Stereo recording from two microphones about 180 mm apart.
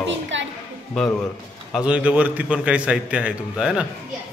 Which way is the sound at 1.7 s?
5° right (ahead or behind).